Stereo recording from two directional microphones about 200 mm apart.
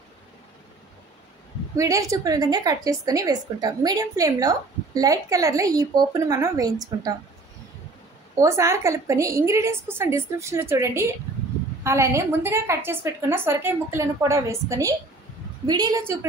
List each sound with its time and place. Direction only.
1.8 s a woman's voice: 15° right (ahead or behind)
8.4 s a woman's voice: 15° right (ahead or behind)